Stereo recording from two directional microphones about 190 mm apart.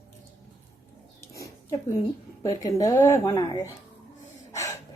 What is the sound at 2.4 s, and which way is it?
Speech, 20° left (ahead or behind).